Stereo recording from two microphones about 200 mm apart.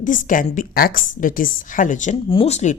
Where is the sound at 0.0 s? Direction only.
40° left (ahead or behind).